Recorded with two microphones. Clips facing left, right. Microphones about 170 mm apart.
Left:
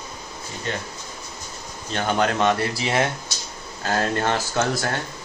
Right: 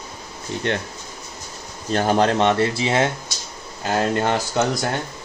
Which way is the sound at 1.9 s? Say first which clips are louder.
Right 4 dB; 40° right (ahead or behind).